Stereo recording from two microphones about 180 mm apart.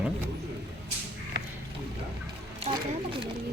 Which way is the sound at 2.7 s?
45° right (ahead or behind).